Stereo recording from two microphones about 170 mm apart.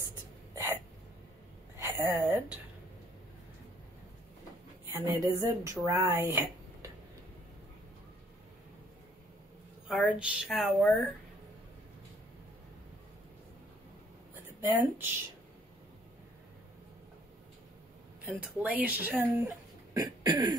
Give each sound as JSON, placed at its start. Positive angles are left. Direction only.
{"t": 1.8, "sound": "a sound", "side_deg": -15}
{"t": 2.2, "sound": "speech", "side_deg": -10}
{"t": 4.8, "sound": "speech", "side_deg": -15}
{"t": 9.8, "sound": "a woman's voice", "side_deg": -5}
{"t": 14.3, "sound": "a sound", "side_deg": -15}
{"t": 18.2, "sound": "speech", "side_deg": -10}